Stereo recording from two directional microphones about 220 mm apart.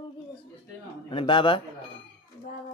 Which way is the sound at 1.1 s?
25° left (ahead or behind).